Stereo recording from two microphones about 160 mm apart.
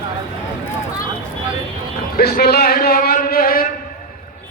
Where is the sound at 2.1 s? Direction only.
80° left.